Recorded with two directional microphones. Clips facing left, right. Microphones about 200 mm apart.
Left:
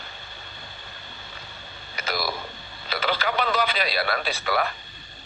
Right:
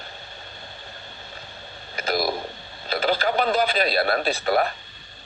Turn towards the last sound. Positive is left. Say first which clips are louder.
# right 4 dB
turn(degrees=-40)  # may be behind; listen again after turning